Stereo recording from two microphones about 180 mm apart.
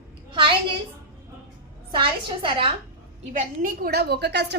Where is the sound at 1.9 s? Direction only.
30° right (ahead or behind).